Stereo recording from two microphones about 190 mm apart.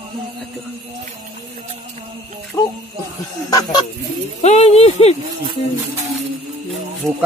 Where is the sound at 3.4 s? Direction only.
20° left (ahead or behind).